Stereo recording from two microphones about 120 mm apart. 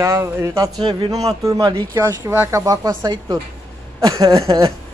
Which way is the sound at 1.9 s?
20° right (ahead or behind).